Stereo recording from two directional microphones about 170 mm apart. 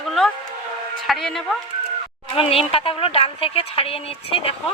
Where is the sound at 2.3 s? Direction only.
35° left (ahead or behind).